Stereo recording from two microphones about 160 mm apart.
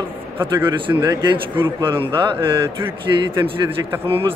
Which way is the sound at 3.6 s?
15° right (ahead or behind).